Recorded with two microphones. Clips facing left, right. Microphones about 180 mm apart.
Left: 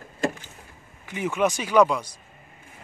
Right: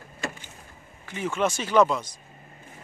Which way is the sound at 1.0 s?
15° left (ahead or behind).